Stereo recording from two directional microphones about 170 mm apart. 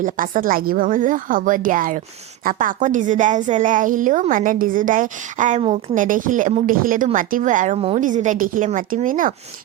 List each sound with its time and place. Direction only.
0.0 s a woman's voice: 55° right (ahead or behind)